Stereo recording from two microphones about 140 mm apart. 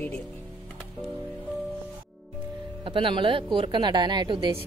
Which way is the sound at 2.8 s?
35° right (ahead or behind).